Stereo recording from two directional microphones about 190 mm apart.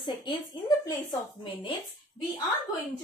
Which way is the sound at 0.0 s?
25° left (ahead or behind).